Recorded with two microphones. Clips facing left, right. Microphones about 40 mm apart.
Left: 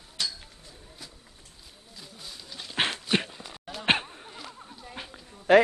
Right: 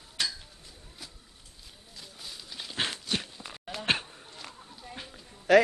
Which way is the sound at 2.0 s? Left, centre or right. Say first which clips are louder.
Left 1 dB; centre.